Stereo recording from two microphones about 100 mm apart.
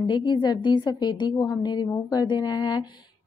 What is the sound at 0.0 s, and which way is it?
A woman's voice, 50° left (ahead or behind).